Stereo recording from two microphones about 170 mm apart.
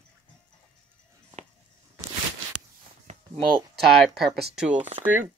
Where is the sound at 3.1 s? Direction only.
45° right (ahead or behind).